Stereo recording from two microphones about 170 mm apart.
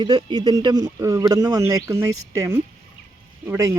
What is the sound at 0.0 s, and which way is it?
Speech, 30° right (ahead or behind).